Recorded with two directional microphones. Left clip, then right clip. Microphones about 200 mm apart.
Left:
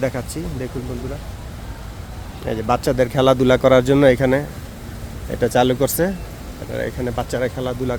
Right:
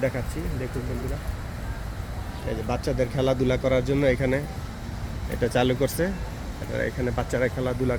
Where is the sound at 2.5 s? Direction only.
45° left (ahead or behind); by 6.1 s 30° left (ahead or behind).